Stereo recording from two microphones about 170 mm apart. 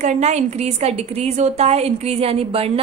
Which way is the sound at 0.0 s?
45° right (ahead or behind).